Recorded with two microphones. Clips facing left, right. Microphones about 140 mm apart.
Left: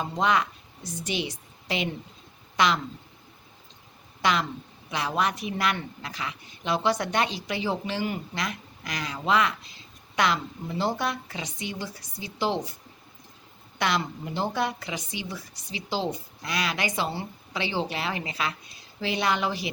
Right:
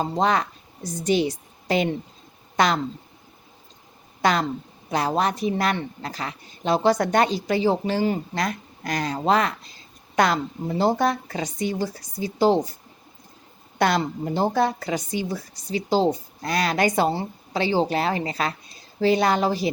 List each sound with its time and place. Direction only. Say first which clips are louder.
0.0 s a woman's voice: right 3 dB; 35° right (ahead or behind)
4.2 s a woman's voice: right 4 dB; 40° right (ahead or behind)
13.7 s a woman's voice: right 6 dB; 40° right (ahead or behind)